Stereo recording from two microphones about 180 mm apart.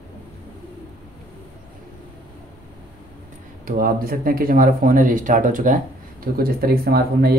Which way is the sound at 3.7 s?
55° right (ahead or behind).